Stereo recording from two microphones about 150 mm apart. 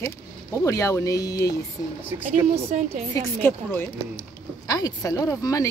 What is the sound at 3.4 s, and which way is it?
Speech, 15° left (ahead or behind).